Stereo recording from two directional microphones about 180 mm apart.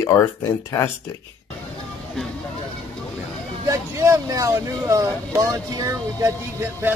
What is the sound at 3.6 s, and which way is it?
Speech, 15° right (ahead or behind).